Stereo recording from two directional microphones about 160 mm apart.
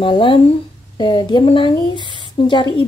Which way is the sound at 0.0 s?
30° left (ahead or behind).